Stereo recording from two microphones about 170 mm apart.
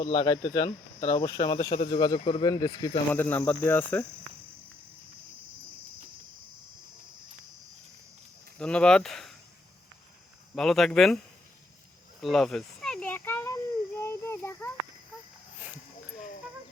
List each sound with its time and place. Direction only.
0.0 s speech: 25° left (ahead or behind)
3.1 s cricket: 10° left (ahead or behind)
8.5 s speech: 5° left (ahead or behind)
10.5 s speech: centre (ahead or behind)
12.2 s a sound: centre (ahead or behind)